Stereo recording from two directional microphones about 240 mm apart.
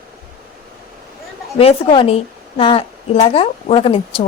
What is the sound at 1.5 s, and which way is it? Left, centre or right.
Speech, left.